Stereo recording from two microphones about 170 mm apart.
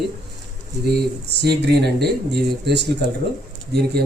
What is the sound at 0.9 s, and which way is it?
A man's voice, 75° right (ahead or behind).